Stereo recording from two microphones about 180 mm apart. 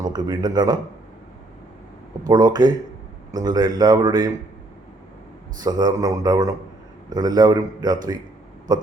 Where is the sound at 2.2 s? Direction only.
20° right (ahead or behind).